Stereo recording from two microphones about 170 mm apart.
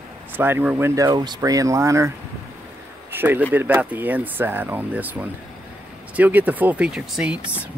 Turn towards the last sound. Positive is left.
turn(degrees=-5)  # may be behind; listen again after turning